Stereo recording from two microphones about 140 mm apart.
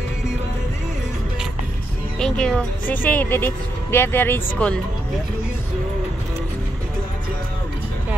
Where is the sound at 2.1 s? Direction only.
5° left (ahead or behind).